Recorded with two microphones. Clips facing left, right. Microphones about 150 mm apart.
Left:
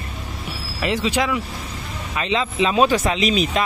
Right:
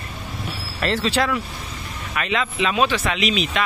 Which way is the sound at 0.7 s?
15° left (ahead or behind).